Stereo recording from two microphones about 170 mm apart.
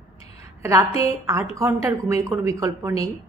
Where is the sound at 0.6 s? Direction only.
15° right (ahead or behind).